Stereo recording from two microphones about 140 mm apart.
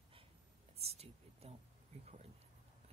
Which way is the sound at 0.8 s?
45° right (ahead or behind).